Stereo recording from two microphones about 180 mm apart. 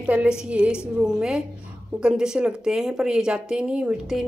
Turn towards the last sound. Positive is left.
turn(degrees=-5)  # may be behind; listen again after turning